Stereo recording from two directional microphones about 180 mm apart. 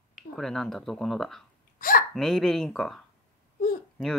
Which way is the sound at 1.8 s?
50° left (ahead or behind).